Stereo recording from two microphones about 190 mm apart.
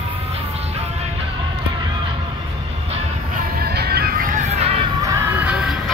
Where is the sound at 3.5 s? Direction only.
55° right (ahead or behind); by 4.7 s 35° right (ahead or behind).